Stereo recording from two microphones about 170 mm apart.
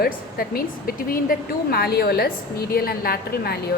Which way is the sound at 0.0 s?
60° left (ahead or behind).